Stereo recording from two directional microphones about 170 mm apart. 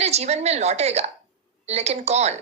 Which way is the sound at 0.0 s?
40° right (ahead or behind).